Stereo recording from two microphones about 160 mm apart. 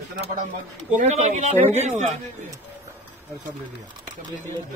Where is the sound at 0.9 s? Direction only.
45° right (ahead or behind).